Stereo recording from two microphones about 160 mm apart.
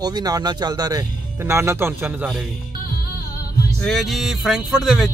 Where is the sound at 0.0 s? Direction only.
25° right (ahead or behind).